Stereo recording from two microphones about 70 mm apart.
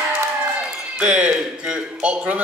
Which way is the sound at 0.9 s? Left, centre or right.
Centre.